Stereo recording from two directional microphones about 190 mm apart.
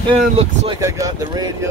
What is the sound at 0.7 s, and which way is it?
Speech, 15° right (ahead or behind).